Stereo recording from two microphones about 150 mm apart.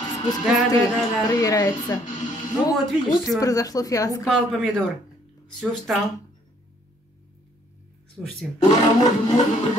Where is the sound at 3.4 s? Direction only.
25° left (ahead or behind).